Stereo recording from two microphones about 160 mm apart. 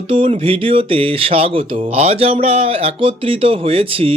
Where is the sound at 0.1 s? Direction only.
35° right (ahead or behind).